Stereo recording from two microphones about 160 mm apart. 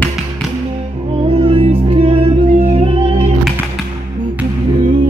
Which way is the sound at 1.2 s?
35° right (ahead or behind).